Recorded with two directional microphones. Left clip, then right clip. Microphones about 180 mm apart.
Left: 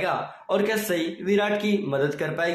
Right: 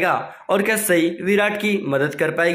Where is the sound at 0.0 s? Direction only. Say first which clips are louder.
Right 6 dB; 35° right (ahead or behind).